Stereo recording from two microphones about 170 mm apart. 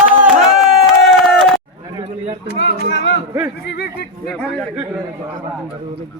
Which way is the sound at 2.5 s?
85° left.